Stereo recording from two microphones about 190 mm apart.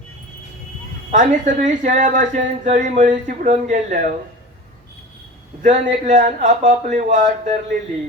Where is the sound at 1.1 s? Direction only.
40° right (ahead or behind).